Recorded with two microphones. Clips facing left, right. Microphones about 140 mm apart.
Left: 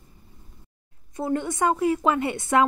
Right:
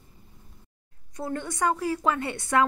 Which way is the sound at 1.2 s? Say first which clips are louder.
Left 4 dB; 20° left (ahead or behind).